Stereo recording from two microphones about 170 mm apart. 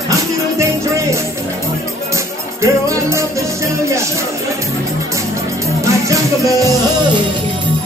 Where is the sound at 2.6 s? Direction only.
15° right (ahead or behind).